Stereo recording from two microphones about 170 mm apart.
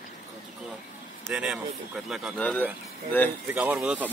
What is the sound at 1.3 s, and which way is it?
Speech, 5° right (ahead or behind).